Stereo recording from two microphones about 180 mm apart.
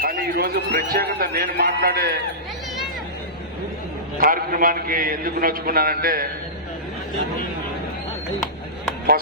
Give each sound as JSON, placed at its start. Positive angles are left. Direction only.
{"t": 0.0, "sound": "a man's voice", "side_deg": -55}
{"t": 4.2, "sound": "a man's voice", "side_deg": -55}